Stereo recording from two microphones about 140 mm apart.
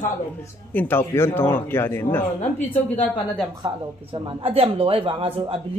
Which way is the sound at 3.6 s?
35° right (ahead or behind).